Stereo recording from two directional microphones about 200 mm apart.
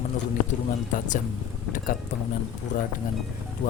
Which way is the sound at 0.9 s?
40° left (ahead or behind).